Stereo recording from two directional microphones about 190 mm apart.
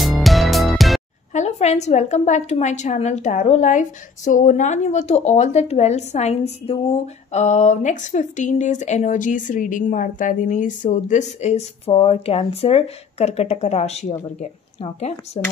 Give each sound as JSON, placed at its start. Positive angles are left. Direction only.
{"t": 0.0, "sound": "music", "side_deg": 0}
{"t": 1.3, "sound": "a woman's voice", "side_deg": 35}